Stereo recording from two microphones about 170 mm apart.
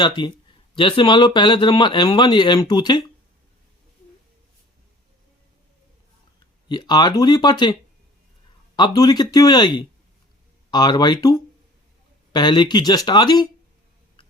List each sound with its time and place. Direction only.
0.0 s speech: 25° left (ahead or behind)
6.7 s speech: 25° left (ahead or behind)